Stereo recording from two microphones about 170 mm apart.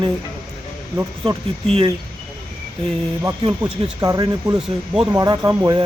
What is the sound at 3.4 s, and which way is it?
A man's voice, 20° right (ahead or behind).